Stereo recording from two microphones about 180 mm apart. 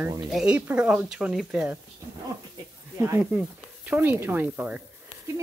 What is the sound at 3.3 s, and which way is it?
Speech, 5° right (ahead or behind).